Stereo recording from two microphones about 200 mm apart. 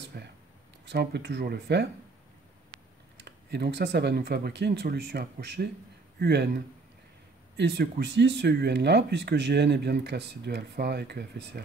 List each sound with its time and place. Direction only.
0.1 s speech: 50° right (ahead or behind)
3.3 s speech: 60° right (ahead or behind)